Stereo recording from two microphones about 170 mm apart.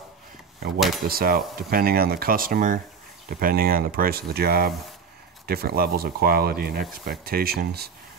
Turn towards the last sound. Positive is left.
turn(degrees=-70)  # may be behind; listen again after turning